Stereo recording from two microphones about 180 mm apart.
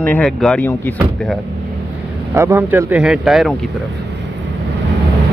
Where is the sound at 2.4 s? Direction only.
10° right (ahead or behind).